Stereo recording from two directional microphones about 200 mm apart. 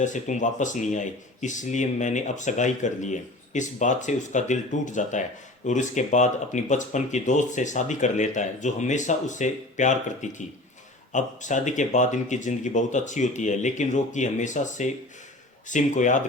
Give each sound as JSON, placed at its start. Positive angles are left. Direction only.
{"t": 0.0, "sound": "speech", "side_deg": 40}